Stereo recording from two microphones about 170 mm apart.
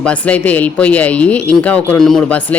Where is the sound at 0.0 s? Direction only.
10° left (ahead or behind).